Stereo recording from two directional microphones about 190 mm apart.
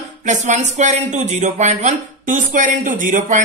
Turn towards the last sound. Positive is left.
turn(degrees=-40)  # may be behind; listen again after turning